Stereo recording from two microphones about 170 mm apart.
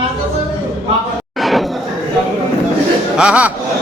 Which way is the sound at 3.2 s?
5° right (ahead or behind).